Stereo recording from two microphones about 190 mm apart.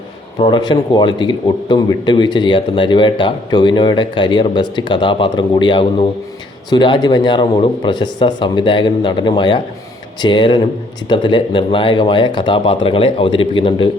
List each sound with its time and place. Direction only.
0.3 s speech: 25° left (ahead or behind)